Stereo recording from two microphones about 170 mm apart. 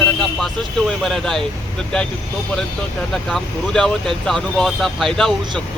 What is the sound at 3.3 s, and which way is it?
Speech, 5° left (ahead or behind).